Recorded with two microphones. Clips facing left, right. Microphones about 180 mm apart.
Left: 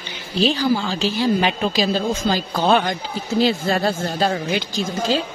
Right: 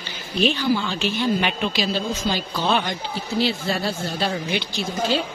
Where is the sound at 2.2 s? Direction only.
50° left (ahead or behind).